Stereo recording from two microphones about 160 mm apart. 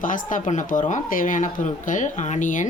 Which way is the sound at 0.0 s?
55° left (ahead or behind).